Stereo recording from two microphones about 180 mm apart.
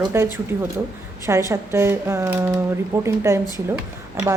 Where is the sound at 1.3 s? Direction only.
15° right (ahead or behind).